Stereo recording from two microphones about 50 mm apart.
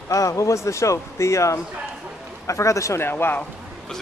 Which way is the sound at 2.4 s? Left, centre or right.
Left.